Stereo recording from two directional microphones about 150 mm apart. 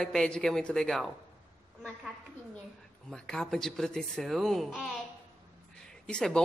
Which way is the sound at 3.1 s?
5° left (ahead or behind).